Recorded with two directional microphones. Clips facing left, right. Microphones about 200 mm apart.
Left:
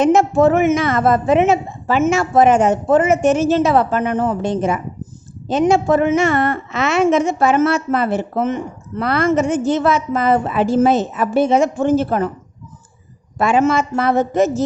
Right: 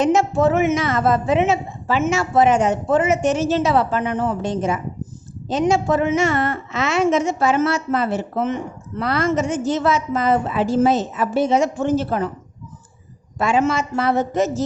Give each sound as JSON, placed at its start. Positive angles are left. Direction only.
{"t": 0.0, "sound": "a woman's voice", "side_deg": 55}
{"t": 13.4, "sound": "a woman's voice", "side_deg": 55}